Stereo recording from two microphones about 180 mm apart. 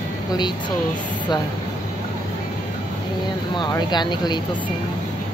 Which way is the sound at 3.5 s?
25° left (ahead or behind).